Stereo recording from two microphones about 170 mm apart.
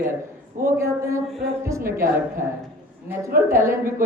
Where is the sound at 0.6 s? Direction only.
15° right (ahead or behind).